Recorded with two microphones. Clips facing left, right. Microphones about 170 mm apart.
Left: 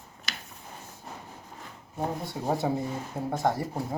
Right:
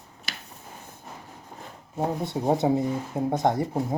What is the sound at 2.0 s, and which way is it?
Speech, 20° right (ahead or behind).